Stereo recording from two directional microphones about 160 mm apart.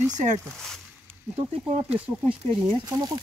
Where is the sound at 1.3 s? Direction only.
40° right (ahead or behind).